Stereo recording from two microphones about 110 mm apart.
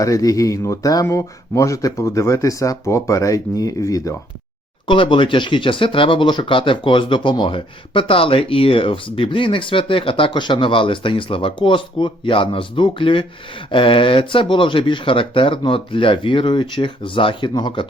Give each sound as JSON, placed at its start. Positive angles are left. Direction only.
{"t": 0.0, "sound": "speech", "side_deg": 30}
{"t": 4.9, "sound": "speech", "side_deg": 50}